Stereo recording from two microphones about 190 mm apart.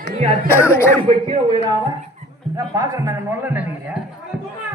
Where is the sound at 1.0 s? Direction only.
30° right (ahead or behind).